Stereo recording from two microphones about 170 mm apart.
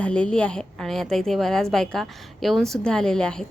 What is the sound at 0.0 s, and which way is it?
A woman's voice, 5° left (ahead or behind).